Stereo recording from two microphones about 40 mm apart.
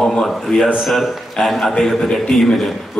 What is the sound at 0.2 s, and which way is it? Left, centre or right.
A man's voice, centre.